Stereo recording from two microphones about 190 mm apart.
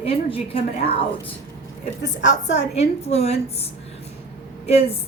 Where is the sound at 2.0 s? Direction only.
40° left (ahead or behind).